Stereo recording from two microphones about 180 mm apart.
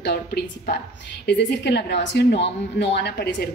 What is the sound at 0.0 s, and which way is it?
A woman's voice, 60° left (ahead or behind).